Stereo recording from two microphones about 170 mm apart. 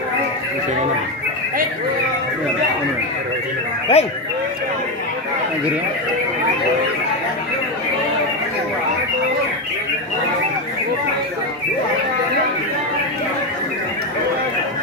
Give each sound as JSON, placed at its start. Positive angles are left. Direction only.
{"t": 3.9, "sound": "speech", "side_deg": 35}